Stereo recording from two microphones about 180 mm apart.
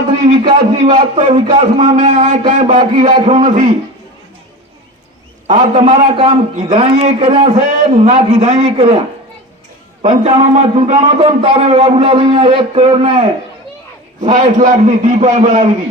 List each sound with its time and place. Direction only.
0.8 s a man's voice: 40° right (ahead or behind)
5.5 s a man's voice: 45° right (ahead or behind)
6.0 s a man's voice: 30° right (ahead or behind)
14.2 s a man's voice: 45° right (ahead or behind)